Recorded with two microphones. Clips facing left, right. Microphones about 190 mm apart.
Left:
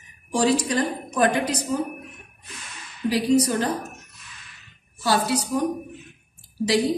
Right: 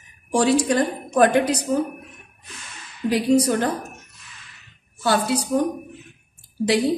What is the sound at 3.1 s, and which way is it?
Speech, 55° right (ahead or behind).